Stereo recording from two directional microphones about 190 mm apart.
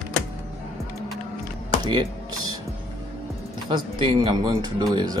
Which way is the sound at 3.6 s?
30° right (ahead or behind).